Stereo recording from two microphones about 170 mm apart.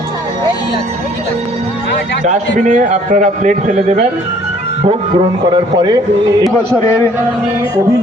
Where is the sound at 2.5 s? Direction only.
45° right (ahead or behind); by 6.0 s 25° right (ahead or behind).